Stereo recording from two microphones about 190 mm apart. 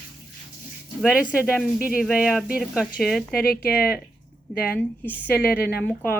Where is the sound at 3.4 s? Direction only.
55° left (ahead or behind).